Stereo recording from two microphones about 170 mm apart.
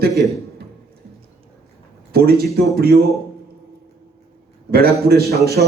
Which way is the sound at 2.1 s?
65° right (ahead or behind).